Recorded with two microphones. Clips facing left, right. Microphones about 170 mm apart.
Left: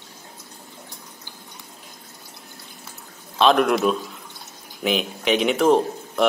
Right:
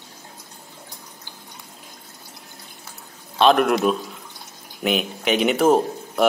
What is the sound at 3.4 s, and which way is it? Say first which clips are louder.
Speech: right 1 dB; centre (ahead or behind).